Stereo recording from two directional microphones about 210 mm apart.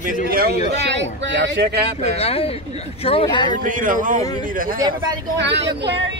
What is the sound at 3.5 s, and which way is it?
A man's voice, 40° right (ahead or behind).